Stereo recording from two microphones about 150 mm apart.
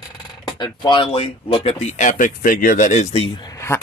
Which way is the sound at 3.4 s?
15° left (ahead or behind).